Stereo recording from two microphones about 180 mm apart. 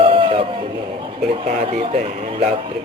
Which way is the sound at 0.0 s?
30° right (ahead or behind).